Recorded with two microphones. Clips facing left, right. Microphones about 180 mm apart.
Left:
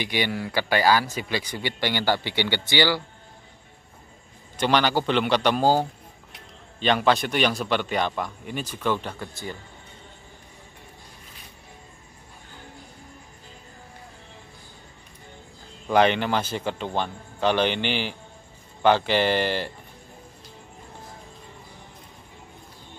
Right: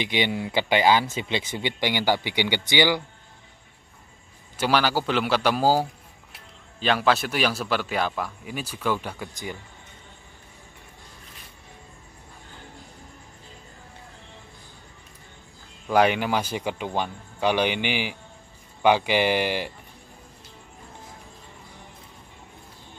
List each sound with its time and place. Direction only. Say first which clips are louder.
0.0 s speech: right 1 dB; 20° right (ahead or behind)
4.6 s a man's voice: left 1 dB; 5° right (ahead or behind)
15.9 s speech: even; 10° right (ahead or behind)